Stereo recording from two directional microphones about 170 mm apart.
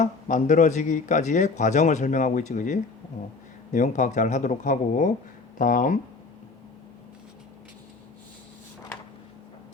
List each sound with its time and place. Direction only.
0.0 s a man's voice: 45° left (ahead or behind)